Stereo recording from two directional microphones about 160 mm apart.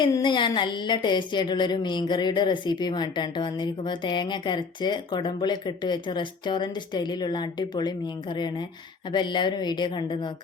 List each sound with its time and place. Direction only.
0.0 s a woman's voice: 30° left (ahead or behind)